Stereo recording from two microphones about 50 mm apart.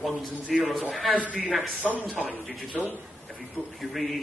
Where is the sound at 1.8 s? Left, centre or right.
Centre.